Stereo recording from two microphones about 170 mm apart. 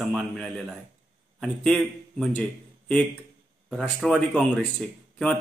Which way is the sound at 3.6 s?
Centre (ahead or behind).